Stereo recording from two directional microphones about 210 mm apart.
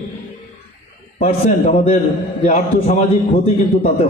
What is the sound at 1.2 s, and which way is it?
A man's voice, 30° left (ahead or behind).